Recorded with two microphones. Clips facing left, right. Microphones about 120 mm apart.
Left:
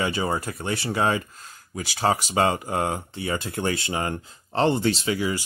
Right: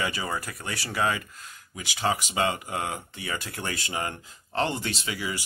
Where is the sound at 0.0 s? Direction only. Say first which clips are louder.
Left 5 dB; 30° left (ahead or behind).